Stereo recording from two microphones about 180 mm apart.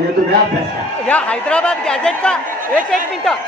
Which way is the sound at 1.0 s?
10° left (ahead or behind).